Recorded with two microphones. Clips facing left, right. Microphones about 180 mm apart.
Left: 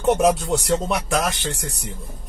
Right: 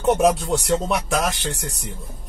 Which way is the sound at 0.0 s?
Centre (ahead or behind).